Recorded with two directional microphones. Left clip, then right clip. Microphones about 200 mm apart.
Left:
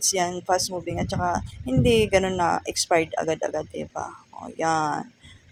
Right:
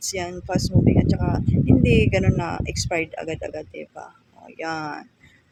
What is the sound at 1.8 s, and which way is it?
Speech, 40° left (ahead or behind).